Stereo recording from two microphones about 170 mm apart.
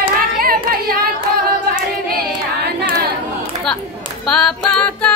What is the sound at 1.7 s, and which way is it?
Singing, 65° right (ahead or behind).